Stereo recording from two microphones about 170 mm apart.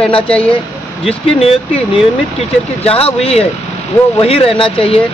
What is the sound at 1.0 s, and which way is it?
Speech, 35° left (ahead or behind).